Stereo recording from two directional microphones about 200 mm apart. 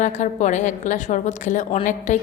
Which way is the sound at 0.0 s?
35° left (ahead or behind).